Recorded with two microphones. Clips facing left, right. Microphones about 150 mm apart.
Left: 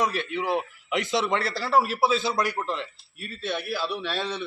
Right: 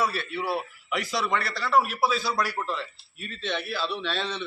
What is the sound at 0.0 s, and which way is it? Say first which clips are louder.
A man's voice: left 2 dB; 15° left (ahead or behind).